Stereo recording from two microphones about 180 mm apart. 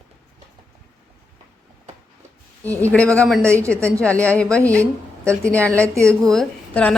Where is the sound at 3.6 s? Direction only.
15° right (ahead or behind).